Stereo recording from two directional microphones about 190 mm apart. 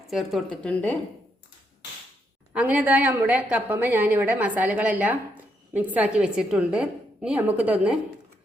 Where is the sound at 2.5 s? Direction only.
10° right (ahead or behind).